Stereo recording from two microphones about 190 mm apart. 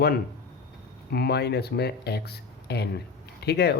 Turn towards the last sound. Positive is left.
turn(degrees=60)  # may be behind; listen again after turning